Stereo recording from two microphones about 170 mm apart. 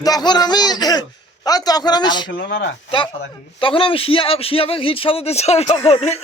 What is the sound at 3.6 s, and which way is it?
Speech, 30° left (ahead or behind).